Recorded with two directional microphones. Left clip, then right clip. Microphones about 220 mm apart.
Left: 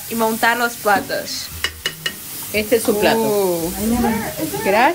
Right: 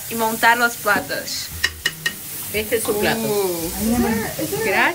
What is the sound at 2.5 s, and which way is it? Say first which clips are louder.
Speech: left 4 dB; 40° left (ahead or behind).